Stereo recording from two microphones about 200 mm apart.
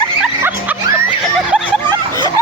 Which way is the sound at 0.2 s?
10° right (ahead or behind).